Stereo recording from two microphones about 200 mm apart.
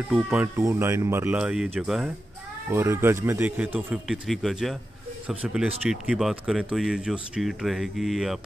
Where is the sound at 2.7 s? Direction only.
10° right (ahead or behind).